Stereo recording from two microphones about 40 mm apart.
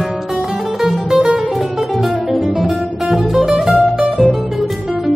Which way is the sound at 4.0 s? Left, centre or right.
Right.